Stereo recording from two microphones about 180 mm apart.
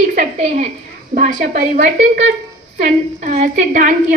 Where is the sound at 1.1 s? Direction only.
45° right (ahead or behind).